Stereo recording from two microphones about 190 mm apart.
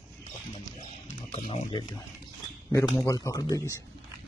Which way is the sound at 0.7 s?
35° left (ahead or behind).